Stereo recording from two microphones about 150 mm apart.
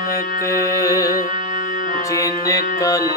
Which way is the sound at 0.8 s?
25° left (ahead or behind).